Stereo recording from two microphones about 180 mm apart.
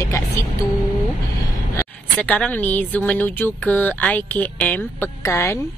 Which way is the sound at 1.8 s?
10° left (ahead or behind).